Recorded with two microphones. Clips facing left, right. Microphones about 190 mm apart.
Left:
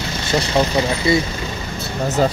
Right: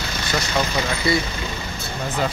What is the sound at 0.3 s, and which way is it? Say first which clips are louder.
Speech: left 6 dB; 30° left (ahead or behind).